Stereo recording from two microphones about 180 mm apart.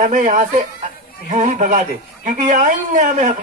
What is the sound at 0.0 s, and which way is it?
A man's voice, 45° right (ahead or behind).